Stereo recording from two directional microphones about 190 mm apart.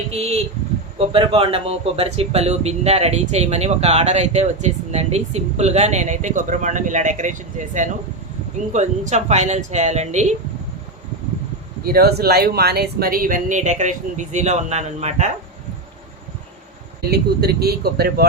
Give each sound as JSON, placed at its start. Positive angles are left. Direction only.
{"t": 0.1, "sound": "a man's voice", "side_deg": -30}
{"t": 11.9, "sound": "speech", "side_deg": -55}
{"t": 17.1, "sound": "speech", "side_deg": -55}